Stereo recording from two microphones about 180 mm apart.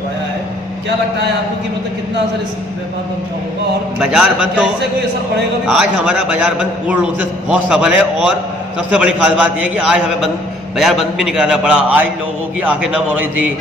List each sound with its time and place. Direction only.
4.0 s a man's voice: 5° right (ahead or behind)
5.7 s a man's voice: 5° right (ahead or behind)